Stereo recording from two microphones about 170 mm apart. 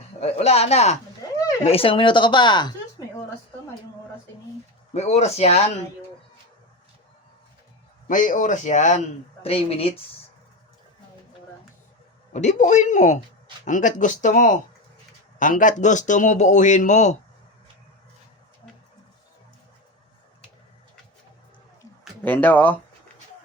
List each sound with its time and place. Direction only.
0.2 s speech: 40° left (ahead or behind)
4.9 s speech: 40° left (ahead or behind)
8.0 s a man's voice: 50° left (ahead or behind); by 10.0 s 35° left (ahead or behind)
12.3 s a man's voice: 45° left (ahead or behind)
22.2 s speech: 10° left (ahead or behind)